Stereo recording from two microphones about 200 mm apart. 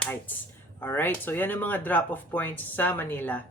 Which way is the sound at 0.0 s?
10° left (ahead or behind).